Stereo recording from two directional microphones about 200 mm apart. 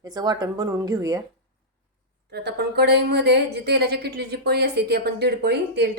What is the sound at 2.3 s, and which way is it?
A woman's voice, 55° right (ahead or behind).